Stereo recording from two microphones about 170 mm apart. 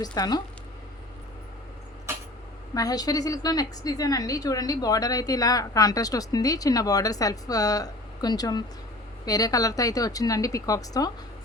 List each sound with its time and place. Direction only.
0.0 s a woman's voice: 25° left (ahead or behind)
2.7 s a woman's voice: 20° left (ahead or behind)